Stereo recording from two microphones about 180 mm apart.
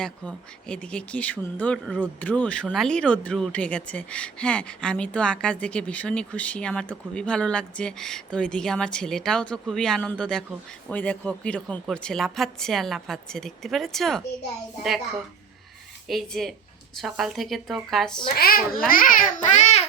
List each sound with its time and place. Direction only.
0.0 s speech: 5° left (ahead or behind)
16.0 s speech: centre (ahead or behind)
18.3 s a child's voice: 55° left (ahead or behind); by 19.8 s 40° left (ahead or behind)